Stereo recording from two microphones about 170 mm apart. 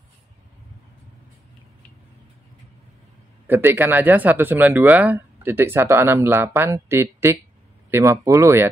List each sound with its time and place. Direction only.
3.4 s speech: 10° right (ahead or behind)